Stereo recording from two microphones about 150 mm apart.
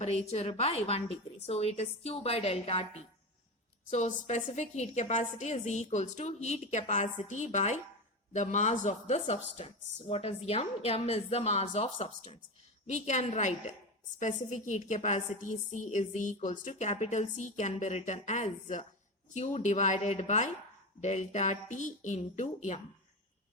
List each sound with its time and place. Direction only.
0.0 s a woman's voice: 45° left (ahead or behind)